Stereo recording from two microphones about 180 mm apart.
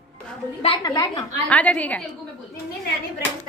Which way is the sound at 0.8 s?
20° left (ahead or behind).